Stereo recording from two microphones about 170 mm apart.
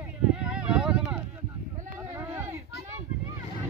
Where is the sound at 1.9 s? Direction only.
15° right (ahead or behind).